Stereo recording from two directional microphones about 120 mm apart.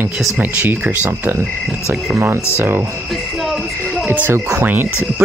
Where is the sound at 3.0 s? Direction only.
Centre (ahead or behind).